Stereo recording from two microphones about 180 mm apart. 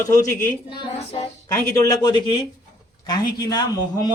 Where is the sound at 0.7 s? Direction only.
30° left (ahead or behind).